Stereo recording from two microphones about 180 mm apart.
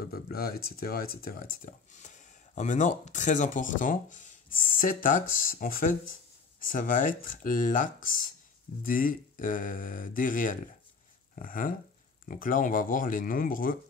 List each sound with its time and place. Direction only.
0.0 s speech: 60° left (ahead or behind)